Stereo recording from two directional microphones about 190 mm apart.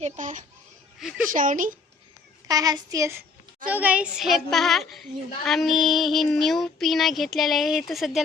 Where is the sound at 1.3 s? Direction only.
45° right (ahead or behind).